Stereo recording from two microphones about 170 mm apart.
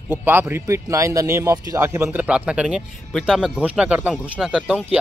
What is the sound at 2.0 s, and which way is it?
Speech, 5° right (ahead or behind).